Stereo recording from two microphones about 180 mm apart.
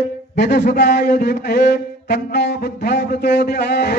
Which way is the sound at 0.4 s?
65° left (ahead or behind).